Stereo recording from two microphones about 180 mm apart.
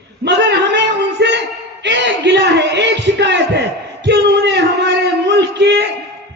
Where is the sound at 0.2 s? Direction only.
70° right (ahead or behind).